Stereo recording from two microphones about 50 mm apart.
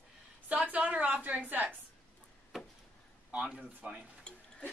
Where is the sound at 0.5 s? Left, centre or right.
Right.